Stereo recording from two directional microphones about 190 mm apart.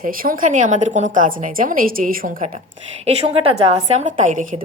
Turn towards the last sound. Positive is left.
turn(degrees=-40)  # may be behind; listen again after turning